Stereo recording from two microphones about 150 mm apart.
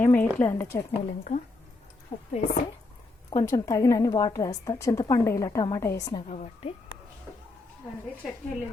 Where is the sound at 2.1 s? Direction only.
45° left (ahead or behind).